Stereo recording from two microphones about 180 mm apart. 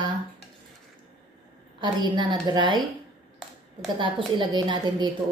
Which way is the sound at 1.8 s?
25° right (ahead or behind).